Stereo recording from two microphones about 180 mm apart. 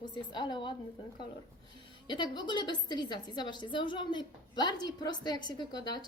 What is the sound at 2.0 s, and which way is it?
A woman's voice, 25° left (ahead or behind).